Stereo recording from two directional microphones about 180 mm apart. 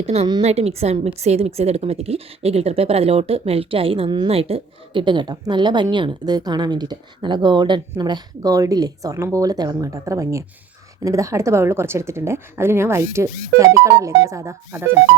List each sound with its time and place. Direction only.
0.0 s a woman's voice: 35° right (ahead or behind); by 14.9 s 10° right (ahead or behind)